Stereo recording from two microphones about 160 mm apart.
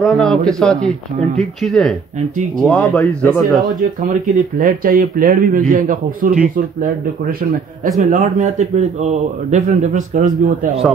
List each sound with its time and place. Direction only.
0.0 s speech: centre (ahead or behind)
4.6 s a man's voice: 60° right (ahead or behind)